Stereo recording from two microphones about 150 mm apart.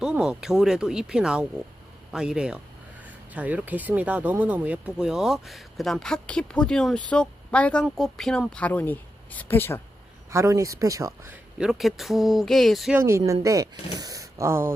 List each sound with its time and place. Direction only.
0.0 s speech: 5° right (ahead or behind); by 9.8 s 15° left (ahead or behind)
10.3 s speech: 20° right (ahead or behind)
11.5 s speech: 5° right (ahead or behind)
12.9 s speech: 20° right (ahead or behind)